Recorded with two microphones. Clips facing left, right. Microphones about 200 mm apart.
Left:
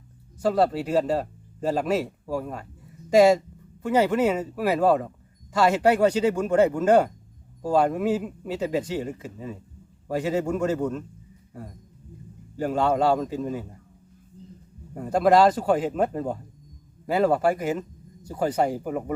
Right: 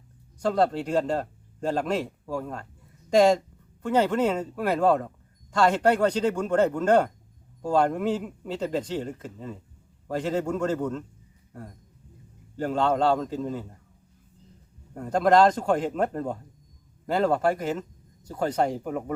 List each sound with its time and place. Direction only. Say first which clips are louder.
0.3 s a man's voice: left 2 dB; 5° left (ahead or behind)
12.5 s speech: left 1 dB; 10° left (ahead or behind)
14.9 s speech: left 1 dB; 10° left (ahead or behind)